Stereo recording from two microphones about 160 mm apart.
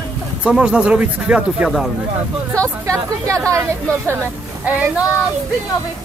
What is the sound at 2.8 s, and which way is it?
Speech, 20° right (ahead or behind).